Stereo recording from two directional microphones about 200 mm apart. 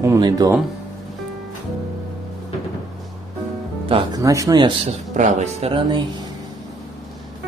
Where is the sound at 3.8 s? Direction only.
20° right (ahead or behind).